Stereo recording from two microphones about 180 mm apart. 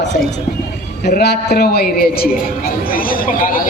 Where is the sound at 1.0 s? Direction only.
65° left (ahead or behind).